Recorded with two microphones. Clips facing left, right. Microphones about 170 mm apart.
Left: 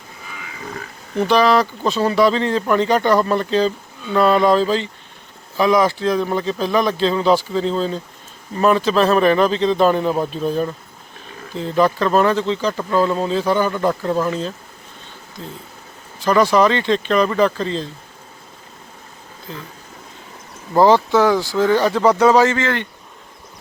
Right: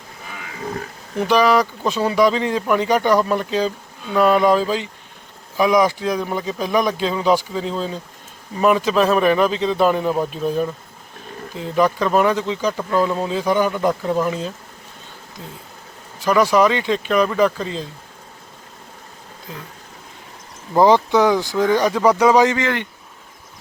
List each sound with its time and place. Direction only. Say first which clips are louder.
1.3 s speech: even; 10° right (ahead or behind)
20.7 s speech: left 1 dB; 15° right (ahead or behind)